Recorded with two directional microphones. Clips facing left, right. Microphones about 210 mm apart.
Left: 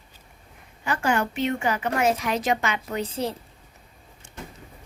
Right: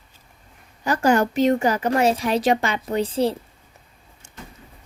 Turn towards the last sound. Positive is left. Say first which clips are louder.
# right 7 dB
turn(degrees=-30)  # may be behind; listen again after turning